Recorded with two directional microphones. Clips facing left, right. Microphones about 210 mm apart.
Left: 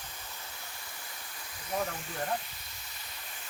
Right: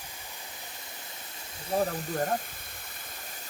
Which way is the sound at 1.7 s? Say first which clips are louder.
Right 6 dB; 30° right (ahead or behind).